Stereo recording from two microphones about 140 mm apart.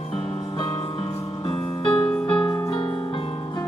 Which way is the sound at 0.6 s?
40° left (ahead or behind).